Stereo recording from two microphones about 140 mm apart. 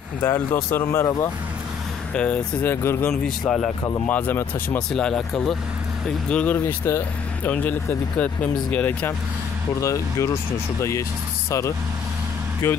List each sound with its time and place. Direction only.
0.2 s speech: 20° left (ahead or behind)
2.1 s speech: 10° left (ahead or behind)
3.1 s a man's voice: 5° left (ahead or behind)
4.9 s a man's voice: 5° left (ahead or behind)
9.8 s speech: 20° left (ahead or behind)
12.6 s speech: 15° left (ahead or behind)